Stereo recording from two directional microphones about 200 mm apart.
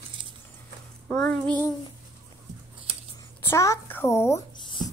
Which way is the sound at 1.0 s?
5° left (ahead or behind).